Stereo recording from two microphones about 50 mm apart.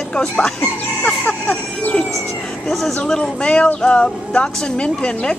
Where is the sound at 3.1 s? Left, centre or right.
Centre.